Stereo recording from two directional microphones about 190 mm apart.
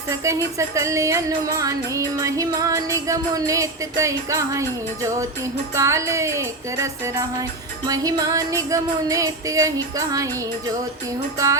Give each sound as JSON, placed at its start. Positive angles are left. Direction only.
{"t": 0.1, "sound": "speech", "side_deg": -15}